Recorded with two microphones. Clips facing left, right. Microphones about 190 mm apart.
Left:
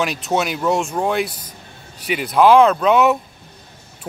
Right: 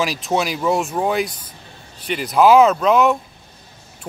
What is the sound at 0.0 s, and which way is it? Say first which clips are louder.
Speech: even; centre (ahead or behind).